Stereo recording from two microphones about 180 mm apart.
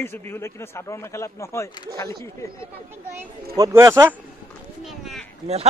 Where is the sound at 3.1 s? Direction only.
15° right (ahead or behind).